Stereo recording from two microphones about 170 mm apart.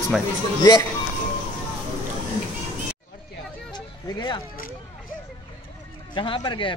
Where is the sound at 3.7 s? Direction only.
25° left (ahead or behind).